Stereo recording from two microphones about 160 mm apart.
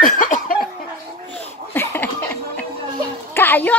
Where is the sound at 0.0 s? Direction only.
55° left (ahead or behind).